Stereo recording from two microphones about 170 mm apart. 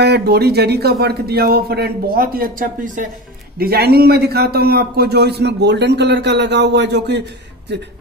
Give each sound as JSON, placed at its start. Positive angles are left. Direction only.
{"t": 0.0, "sound": "speech", "side_deg": -75}
{"t": 3.5, "sound": "a man's voice", "side_deg": -65}